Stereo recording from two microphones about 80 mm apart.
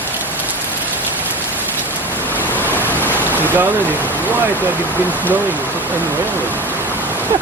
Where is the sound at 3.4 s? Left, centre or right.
Right.